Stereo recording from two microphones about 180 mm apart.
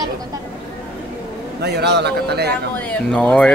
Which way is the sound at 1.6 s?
70° right (ahead or behind).